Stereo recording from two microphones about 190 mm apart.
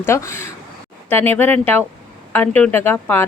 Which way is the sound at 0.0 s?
15° left (ahead or behind).